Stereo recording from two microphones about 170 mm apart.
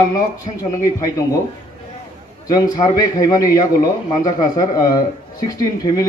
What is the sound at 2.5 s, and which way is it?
A man's voice, 25° left (ahead or behind).